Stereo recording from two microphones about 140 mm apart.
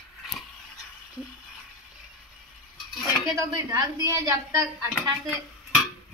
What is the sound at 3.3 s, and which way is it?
Speech, 25° right (ahead or behind).